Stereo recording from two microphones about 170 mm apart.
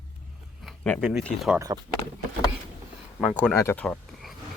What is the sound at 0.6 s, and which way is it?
Speech, centre (ahead or behind).